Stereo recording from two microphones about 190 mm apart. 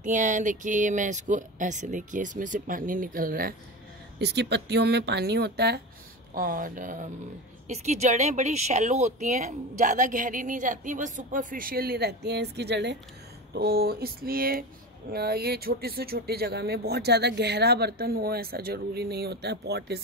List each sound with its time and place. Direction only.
0.0 s speech: 40° right (ahead or behind)
4.2 s speech: 60° right (ahead or behind)
6.3 s speech: 45° right (ahead or behind)